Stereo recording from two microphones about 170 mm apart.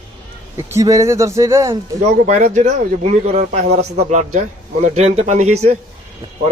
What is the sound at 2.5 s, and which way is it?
Speech, 45° right (ahead or behind).